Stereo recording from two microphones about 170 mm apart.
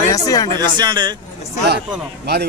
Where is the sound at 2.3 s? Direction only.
75° right (ahead or behind).